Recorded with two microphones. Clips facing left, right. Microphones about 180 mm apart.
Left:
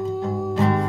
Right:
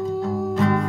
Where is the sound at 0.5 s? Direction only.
30° left (ahead or behind).